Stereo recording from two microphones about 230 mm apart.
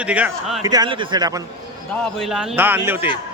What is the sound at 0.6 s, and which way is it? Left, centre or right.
Speech, centre.